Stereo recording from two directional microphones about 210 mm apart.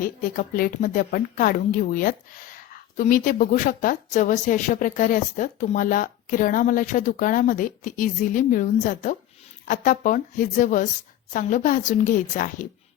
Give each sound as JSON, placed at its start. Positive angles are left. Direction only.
{"t": 0.0, "sound": "a woman's voice", "side_deg": 40}